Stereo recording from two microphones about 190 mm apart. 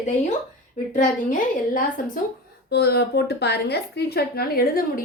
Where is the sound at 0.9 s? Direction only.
45° left (ahead or behind).